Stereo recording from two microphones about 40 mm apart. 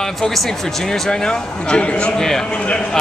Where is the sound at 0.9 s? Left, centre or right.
Left.